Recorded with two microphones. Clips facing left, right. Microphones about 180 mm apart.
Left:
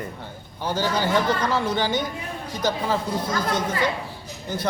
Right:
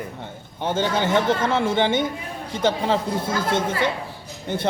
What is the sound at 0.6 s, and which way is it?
A man's voice, 25° right (ahead or behind).